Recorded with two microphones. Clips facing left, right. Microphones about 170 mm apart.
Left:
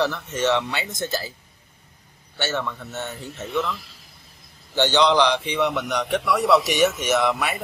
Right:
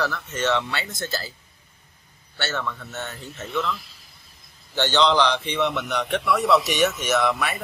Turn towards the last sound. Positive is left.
turn(degrees=15)  # may be behind; listen again after turning